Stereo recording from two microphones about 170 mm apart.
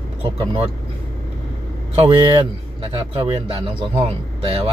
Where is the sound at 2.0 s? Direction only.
25° right (ahead or behind).